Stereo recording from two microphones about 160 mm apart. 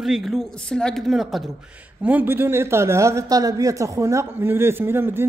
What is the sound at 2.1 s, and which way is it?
Speech, 10° right (ahead or behind).